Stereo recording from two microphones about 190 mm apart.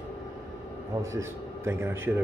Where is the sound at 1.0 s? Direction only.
15° right (ahead or behind).